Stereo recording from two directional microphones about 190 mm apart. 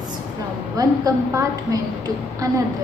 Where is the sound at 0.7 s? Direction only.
20° right (ahead or behind).